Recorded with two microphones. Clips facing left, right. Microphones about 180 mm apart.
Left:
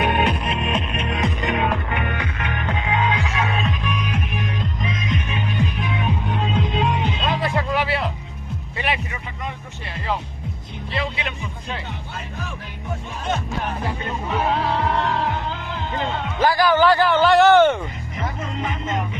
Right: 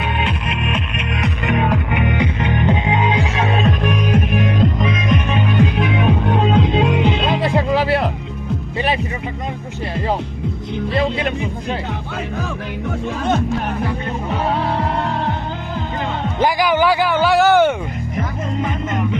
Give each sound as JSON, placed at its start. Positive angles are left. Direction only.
{"t": 0.0, "sound": "music", "side_deg": 50}
{"t": 0.4, "sound": "music", "side_deg": 30}
{"t": 1.6, "sound": "music", "side_deg": -10}
{"t": 3.7, "sound": "music", "side_deg": -50}
{"t": 4.4, "sound": "music", "side_deg": -70}
{"t": 7.4, "sound": "music", "side_deg": -25}
{"t": 7.9, "sound": "music", "side_deg": -55}
{"t": 10.9, "sound": "music", "side_deg": -45}
{"t": 16.4, "sound": "a sound", "side_deg": -15}